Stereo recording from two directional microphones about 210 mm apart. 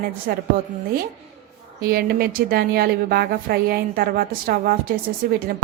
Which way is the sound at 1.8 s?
45° right (ahead or behind).